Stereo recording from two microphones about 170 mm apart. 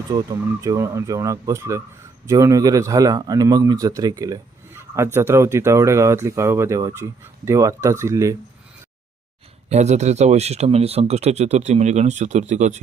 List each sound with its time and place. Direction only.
0.1 s speech: 25° right (ahead or behind)
9.6 s speech: 40° right (ahead or behind)